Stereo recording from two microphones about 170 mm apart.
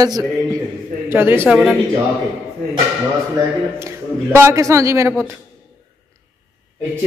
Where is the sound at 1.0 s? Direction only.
15° right (ahead or behind).